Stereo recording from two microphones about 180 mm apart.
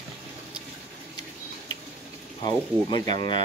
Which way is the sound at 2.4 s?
25° left (ahead or behind).